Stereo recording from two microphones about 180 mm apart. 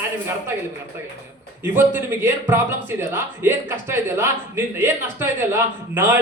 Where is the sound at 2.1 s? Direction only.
15° right (ahead or behind).